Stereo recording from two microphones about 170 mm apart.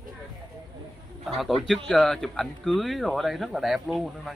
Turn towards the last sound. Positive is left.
turn(degrees=0)  # may be behind; listen again after turning